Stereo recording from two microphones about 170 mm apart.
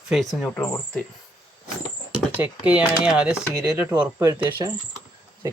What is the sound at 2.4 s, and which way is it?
Speech, 10° right (ahead or behind).